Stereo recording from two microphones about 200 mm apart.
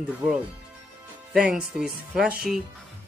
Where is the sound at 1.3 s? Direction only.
5° right (ahead or behind).